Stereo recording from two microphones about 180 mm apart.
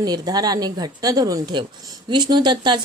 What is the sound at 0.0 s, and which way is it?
A woman's voice, 20° right (ahead or behind).